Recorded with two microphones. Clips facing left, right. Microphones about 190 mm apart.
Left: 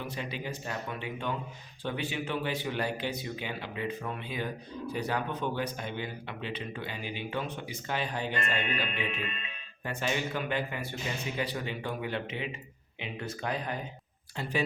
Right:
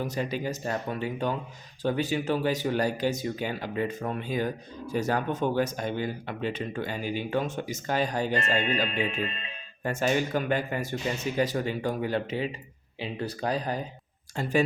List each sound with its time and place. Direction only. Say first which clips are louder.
0.0 s speech: right 7 dB; 40° right (ahead or behind)